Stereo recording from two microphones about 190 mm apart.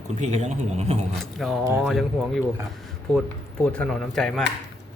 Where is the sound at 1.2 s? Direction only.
Centre (ahead or behind).